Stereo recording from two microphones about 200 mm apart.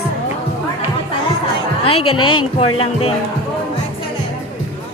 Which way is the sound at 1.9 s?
90° left.